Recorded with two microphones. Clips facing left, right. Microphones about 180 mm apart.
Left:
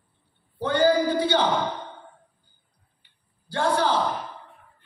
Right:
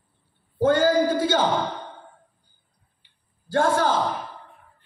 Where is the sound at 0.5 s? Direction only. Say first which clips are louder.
Right 2 dB; 45° right (ahead or behind).